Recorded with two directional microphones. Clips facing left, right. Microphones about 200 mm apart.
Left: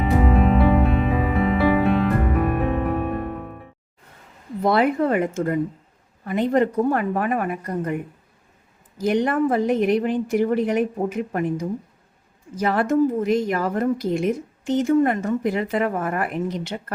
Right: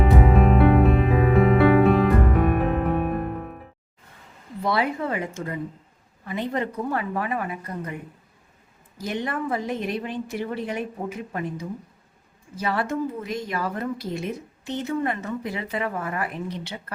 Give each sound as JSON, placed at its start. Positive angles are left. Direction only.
{"t": 0.0, "sound": "music", "side_deg": 0}
{"t": 4.6, "sound": "a woman's voice", "side_deg": 50}
{"t": 9.0, "sound": "a woman's voice", "side_deg": 50}